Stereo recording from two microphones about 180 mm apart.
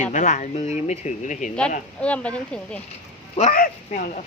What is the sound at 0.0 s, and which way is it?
Speech, 45° left (ahead or behind).